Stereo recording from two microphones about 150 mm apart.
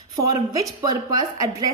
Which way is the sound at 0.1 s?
20° right (ahead or behind).